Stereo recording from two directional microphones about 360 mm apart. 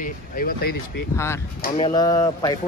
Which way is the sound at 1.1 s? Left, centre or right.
Centre.